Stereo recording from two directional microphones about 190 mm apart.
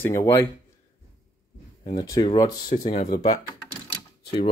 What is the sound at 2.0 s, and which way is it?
Speech, 20° left (ahead or behind).